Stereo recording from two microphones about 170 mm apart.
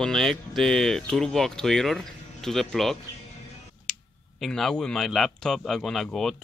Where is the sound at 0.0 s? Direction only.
Centre (ahead or behind).